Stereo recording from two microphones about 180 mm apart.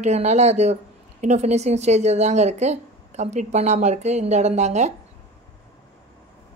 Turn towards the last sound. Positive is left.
turn(degrees=-40)  # may be behind; listen again after turning